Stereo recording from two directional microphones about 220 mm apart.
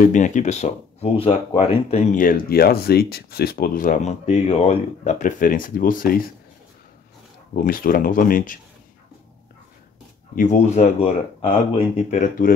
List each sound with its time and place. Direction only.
0.0 s speech: 35° left (ahead or behind)
7.6 s speech: 40° left (ahead or behind)
10.3 s speech: 35° left (ahead or behind)